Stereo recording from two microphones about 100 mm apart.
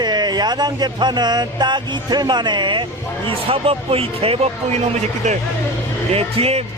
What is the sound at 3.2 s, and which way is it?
Speech, 70° right (ahead or behind).